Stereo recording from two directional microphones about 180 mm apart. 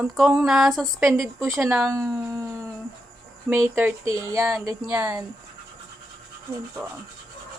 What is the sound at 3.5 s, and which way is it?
Speech, 10° right (ahead or behind).